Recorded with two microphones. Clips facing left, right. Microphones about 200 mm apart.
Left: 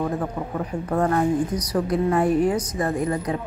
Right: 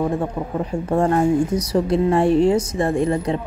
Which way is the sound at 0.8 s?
25° right (ahead or behind).